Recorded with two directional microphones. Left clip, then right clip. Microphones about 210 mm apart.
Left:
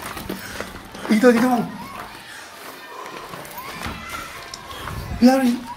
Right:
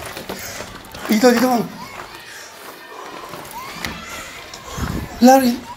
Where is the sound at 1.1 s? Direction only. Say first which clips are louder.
Right 1 dB; 20° right (ahead or behind).